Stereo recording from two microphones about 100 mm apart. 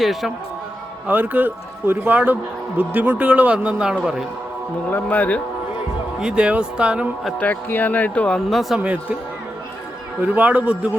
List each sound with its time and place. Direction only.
0.0 s speech: centre (ahead or behind)
1.0 s a man's voice: 15° right (ahead or behind)
4.9 s speech: 20° left (ahead or behind)
6.1 s a man's voice: 10° right (ahead or behind)
7.3 s speech: 15° left (ahead or behind)
8.4 s speech: centre (ahead or behind)
8.8 s a man's voice: 15° right (ahead or behind)
10.2 s a man's voice: 15° right (ahead or behind)